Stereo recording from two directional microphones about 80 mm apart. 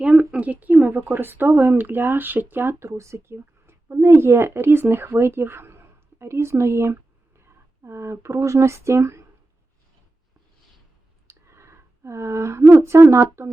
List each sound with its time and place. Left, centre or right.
0.0 s speech: centre; by 9.2 s right
11.3 s speech: right